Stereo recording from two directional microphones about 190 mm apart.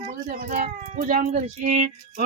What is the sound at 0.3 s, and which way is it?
Speech, 40° right (ahead or behind).